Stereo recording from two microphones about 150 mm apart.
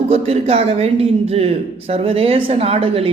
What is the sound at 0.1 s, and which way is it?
Speech, 45° right (ahead or behind).